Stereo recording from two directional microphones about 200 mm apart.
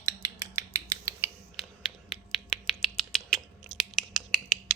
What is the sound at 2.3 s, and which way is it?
Rodents, centre (ahead or behind).